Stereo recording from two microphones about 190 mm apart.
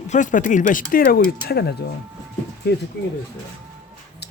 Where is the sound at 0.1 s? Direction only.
40° left (ahead or behind); by 1.7 s 55° left (ahead or behind).